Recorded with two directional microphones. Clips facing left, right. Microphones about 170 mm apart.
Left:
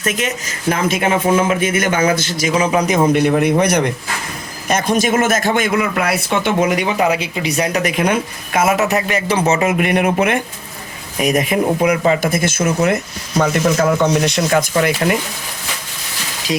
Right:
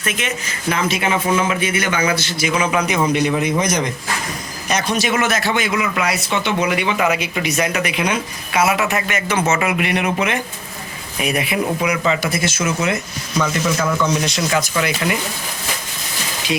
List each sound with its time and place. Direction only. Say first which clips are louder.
0.0 s speech: left 4 dB; 40° left (ahead or behind)
3.1 s a man's voice: left 4 dB; 55° left (ahead or behind)
4.7 s speech: left 4 dB; 50° left (ahead or behind)